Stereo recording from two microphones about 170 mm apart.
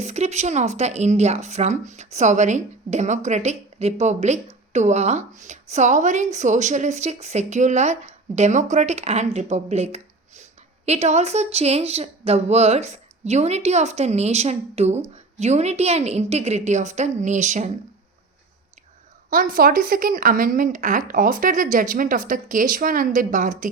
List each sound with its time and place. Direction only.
0.0 s a woman's voice: 40° right (ahead or behind)
19.3 s a woman's voice: 55° right (ahead or behind)